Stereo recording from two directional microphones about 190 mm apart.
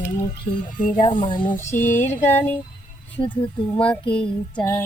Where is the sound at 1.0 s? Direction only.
25° left (ahead or behind).